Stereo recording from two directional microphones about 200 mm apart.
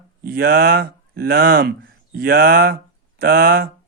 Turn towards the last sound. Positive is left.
turn(degrees=-50)  # may be behind; listen again after turning